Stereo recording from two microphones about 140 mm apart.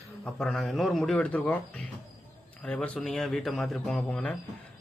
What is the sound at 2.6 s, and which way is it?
A man's voice, 10° left (ahead or behind).